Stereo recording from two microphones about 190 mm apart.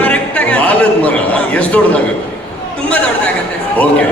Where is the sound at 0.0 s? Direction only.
5° left (ahead or behind).